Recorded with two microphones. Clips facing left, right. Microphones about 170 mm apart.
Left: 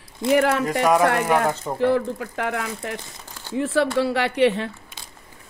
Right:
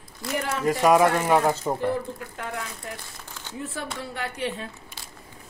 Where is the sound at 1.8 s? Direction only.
90° left.